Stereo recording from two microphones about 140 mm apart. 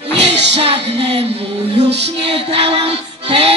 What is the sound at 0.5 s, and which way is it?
Music, 40° right (ahead or behind).